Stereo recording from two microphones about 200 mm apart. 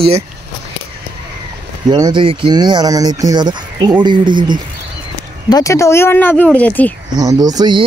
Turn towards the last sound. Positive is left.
turn(degrees=-20)  # may be behind; listen again after turning